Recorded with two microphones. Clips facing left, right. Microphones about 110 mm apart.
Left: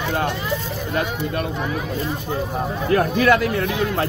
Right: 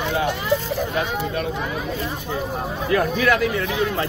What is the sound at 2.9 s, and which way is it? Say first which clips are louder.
Speech: left 3 dB; 45° left (ahead or behind).